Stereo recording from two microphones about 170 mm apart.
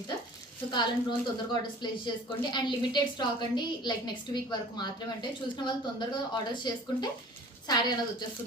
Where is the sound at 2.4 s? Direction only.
30° left (ahead or behind).